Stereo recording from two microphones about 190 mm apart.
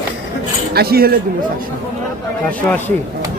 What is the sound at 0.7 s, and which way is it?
Speech, 55° right (ahead or behind).